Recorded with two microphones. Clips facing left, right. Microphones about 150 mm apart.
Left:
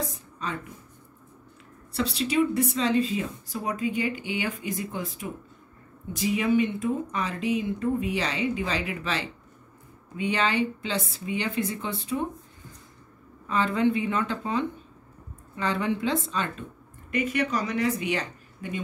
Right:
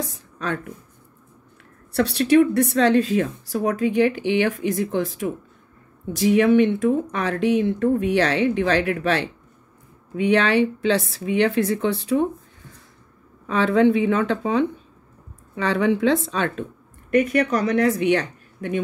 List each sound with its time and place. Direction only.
1.9 s a woman's voice: 65° right (ahead or behind); by 5.3 s 85° right
6.1 s a woman's voice: 75° right (ahead or behind)
13.5 s a woman's voice: 75° right (ahead or behind)